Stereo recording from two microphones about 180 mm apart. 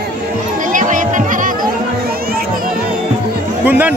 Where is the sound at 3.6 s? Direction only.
10° right (ahead or behind).